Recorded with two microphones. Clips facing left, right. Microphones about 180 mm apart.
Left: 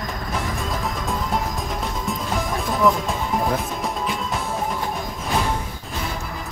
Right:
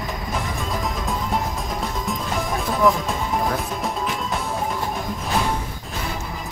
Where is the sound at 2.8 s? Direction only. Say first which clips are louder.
Even; centre (ahead or behind).